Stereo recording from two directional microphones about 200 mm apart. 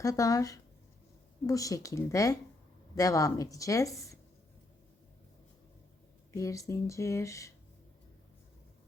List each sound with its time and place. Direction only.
0.0 s speech: 15° left (ahead or behind)
6.3 s speech: 15° left (ahead or behind)